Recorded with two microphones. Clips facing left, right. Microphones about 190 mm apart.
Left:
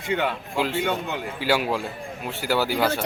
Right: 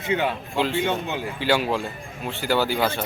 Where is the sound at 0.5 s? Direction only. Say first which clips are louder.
Right 1 dB; 5° left (ahead or behind).